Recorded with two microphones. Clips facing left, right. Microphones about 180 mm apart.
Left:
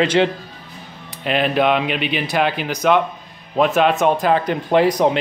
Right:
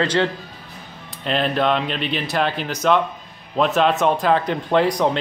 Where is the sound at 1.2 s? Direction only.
10° left (ahead or behind).